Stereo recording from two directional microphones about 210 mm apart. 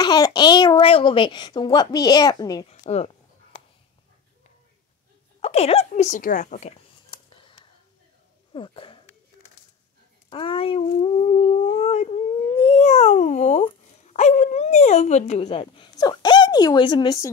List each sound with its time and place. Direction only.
0.0 s a child's voice: 20° left (ahead or behind)
2.7 s speech: 30° left (ahead or behind)
5.4 s a sound: 30° left (ahead or behind)
8.5 s a child's voice: 25° left (ahead or behind)
10.3 s a child's voice: 25° left (ahead or behind)